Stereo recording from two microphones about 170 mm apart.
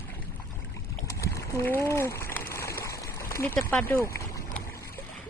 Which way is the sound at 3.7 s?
10° left (ahead or behind).